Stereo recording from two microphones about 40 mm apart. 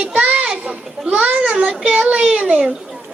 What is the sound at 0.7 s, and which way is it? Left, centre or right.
A child's voice, right.